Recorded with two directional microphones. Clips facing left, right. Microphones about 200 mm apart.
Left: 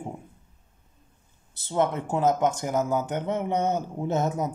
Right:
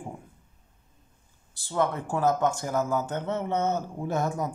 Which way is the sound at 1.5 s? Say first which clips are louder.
Left 2 dB; 20° left (ahead or behind).